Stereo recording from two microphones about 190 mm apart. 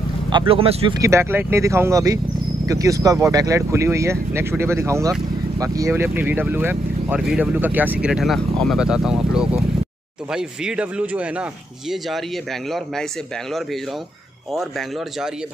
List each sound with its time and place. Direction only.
0.3 s speech: 25° right (ahead or behind)
0.9 s speech: 15° right (ahead or behind)